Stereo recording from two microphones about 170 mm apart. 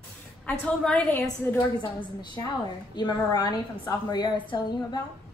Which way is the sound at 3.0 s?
25° left (ahead or behind).